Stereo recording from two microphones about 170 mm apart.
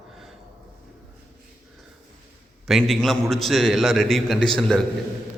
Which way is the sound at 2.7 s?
Centre (ahead or behind).